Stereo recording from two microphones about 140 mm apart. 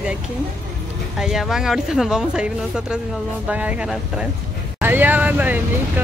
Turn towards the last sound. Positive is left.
turn(degrees=-10)  # may be behind; listen again after turning